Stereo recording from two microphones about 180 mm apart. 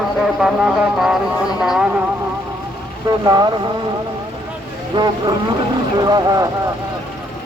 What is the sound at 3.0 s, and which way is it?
Speech, 20° right (ahead or behind).